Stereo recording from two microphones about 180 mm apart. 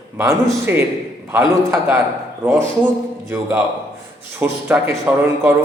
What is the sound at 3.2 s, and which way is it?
Speech, 10° right (ahead or behind).